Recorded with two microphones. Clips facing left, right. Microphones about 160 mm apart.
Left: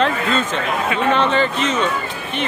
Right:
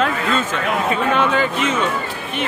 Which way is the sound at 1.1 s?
10° right (ahead or behind).